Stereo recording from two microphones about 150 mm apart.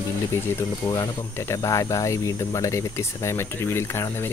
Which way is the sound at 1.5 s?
20° left (ahead or behind).